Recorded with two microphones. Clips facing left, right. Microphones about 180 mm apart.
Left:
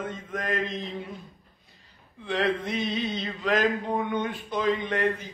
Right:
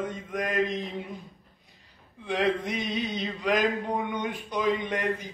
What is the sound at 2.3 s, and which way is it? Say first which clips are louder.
Speech: even; 15° right (ahead or behind).